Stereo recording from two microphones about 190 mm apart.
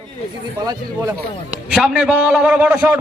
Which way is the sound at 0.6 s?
15° right (ahead or behind).